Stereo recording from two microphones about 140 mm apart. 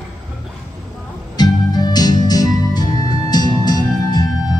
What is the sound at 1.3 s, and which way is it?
Music, 30° left (ahead or behind).